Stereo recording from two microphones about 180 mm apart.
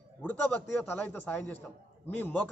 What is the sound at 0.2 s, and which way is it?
A man's voice, 10° left (ahead or behind).